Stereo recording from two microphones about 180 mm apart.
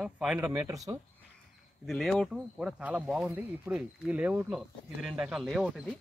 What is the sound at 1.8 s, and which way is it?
Speech, centre (ahead or behind).